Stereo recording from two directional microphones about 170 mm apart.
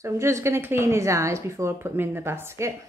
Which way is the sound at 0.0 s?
15° right (ahead or behind).